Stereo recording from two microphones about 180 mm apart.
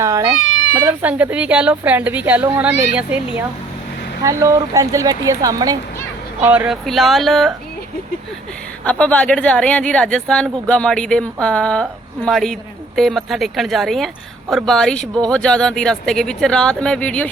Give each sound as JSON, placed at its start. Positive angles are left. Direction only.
{"t": 0.0, "sound": "a woman's voice", "side_deg": -20}
{"t": 6.4, "sound": "a woman's voice", "side_deg": -10}
{"t": 8.8, "sound": "a woman's voice", "side_deg": 5}